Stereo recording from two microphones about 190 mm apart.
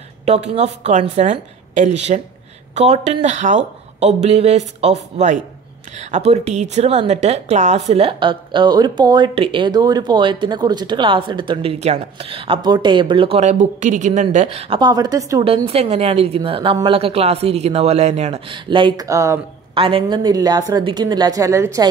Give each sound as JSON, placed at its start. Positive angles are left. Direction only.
{"t": 0.2, "sound": "a woman's voice", "side_deg": -35}
{"t": 15.4, "sound": "speech", "side_deg": -30}
{"t": 19.7, "sound": "a woman's voice", "side_deg": -25}